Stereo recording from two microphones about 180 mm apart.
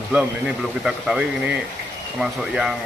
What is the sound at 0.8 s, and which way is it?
Speech, 5° right (ahead or behind).